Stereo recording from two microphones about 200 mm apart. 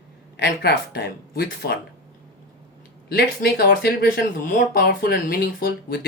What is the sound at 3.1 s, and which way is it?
Speech, 50° left (ahead or behind).